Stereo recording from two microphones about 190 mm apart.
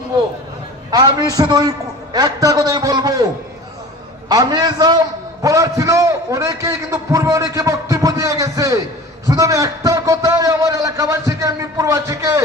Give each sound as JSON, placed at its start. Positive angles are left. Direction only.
{"t": 0.9, "sound": "a man's voice", "side_deg": -20}
{"t": 4.3, "sound": "a man's voice", "side_deg": -20}